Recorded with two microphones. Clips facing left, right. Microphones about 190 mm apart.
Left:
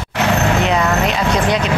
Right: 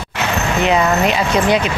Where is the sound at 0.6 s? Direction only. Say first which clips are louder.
Right 2 dB; 5° right (ahead or behind).